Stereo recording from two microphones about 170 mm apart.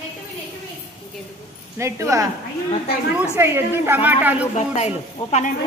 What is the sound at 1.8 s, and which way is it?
A woman's voice, 15° right (ahead or behind).